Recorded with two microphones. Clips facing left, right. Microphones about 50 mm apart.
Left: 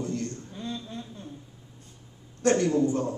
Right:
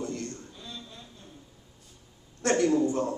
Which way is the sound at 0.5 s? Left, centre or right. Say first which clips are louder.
Left 8 dB; left.